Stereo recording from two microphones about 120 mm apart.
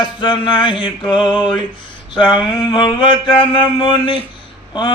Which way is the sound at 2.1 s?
40° left (ahead or behind).